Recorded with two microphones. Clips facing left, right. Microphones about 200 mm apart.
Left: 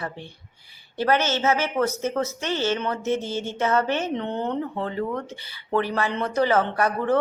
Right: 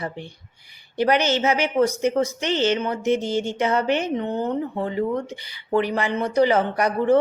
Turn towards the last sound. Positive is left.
turn(degrees=-15)  # may be behind; listen again after turning